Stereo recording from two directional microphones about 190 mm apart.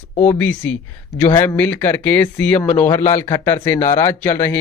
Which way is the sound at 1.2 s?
15° left (ahead or behind).